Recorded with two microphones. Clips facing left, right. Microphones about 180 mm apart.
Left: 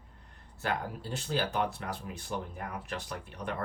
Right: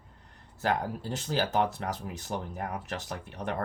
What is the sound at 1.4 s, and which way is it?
Speech, 45° right (ahead or behind).